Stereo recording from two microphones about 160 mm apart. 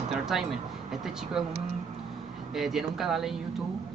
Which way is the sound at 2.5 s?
Centre (ahead or behind).